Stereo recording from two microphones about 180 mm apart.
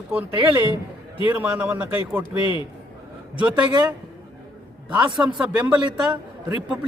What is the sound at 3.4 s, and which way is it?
Speech, 5° right (ahead or behind).